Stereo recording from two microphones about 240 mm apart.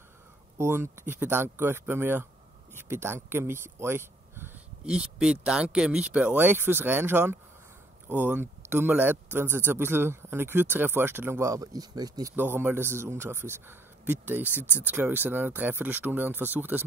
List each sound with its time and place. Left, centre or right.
0.6 s speech: centre